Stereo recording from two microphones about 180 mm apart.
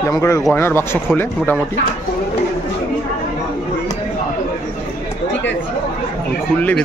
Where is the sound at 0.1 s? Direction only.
15° left (ahead or behind).